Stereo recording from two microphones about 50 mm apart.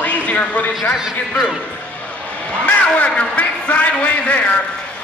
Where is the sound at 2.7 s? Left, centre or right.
Left.